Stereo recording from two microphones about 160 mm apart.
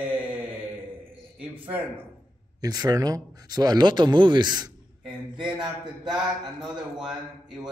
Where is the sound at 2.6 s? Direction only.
25° right (ahead or behind).